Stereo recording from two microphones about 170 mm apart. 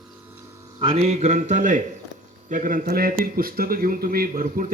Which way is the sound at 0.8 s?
35° right (ahead or behind).